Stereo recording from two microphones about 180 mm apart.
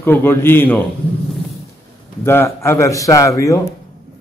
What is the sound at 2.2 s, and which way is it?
Speech, 15° left (ahead or behind).